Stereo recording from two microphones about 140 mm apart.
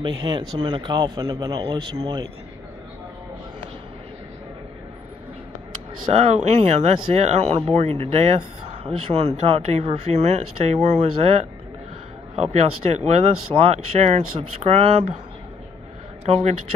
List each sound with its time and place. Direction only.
0.0 s speech: 35° right (ahead or behind)
6.2 s speech: 50° right (ahead or behind)
12.9 s speech: 50° right (ahead or behind)
16.3 s speech: 40° right (ahead or behind)